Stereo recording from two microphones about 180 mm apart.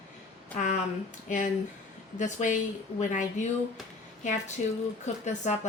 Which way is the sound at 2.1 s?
45° left (ahead or behind).